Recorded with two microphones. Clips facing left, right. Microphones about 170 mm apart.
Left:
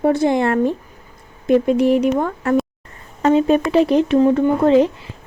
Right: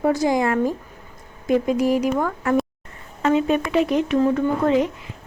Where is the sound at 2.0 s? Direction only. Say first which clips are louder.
Left 3 dB; 30° left (ahead or behind).